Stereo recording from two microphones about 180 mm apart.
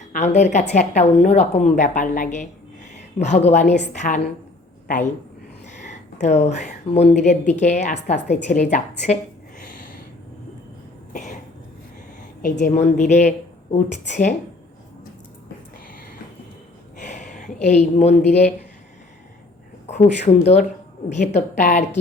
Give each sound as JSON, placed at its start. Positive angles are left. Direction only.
{"t": 0.1, "sound": "a woman's voice", "side_deg": 40}
{"t": 5.7, "sound": "a sound", "side_deg": 40}
{"t": 6.2, "sound": "a woman's voice", "side_deg": 40}
{"t": 11.1, "sound": "cough", "side_deg": 45}
{"t": 12.4, "sound": "a woman's voice", "side_deg": 45}
{"t": 17.0, "sound": "a sound", "side_deg": 45}
{"t": 18.3, "sound": "a woman's voice", "side_deg": 40}
{"t": 19.9, "sound": "a woman's voice", "side_deg": 40}